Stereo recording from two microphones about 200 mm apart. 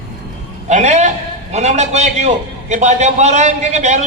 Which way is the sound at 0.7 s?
35° right (ahead or behind).